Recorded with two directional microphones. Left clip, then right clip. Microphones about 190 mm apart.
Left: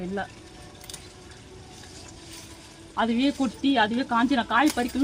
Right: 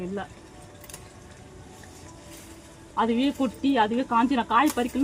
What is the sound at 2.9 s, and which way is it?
Speech, 25° left (ahead or behind).